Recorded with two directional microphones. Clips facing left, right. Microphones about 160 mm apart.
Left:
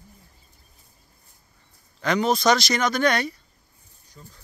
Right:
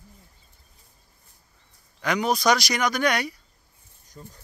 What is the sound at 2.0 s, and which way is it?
Speech, 10° right (ahead or behind).